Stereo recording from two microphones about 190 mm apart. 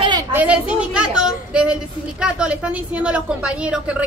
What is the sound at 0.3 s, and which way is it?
A child's voice, 10° right (ahead or behind).